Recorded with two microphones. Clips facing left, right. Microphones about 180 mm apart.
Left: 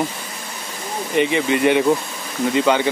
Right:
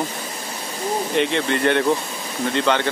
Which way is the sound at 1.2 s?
5° left (ahead or behind).